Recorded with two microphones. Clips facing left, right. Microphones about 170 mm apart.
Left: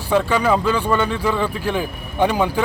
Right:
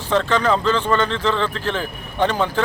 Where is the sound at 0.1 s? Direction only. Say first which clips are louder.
Left 1 dB; 10° left (ahead or behind).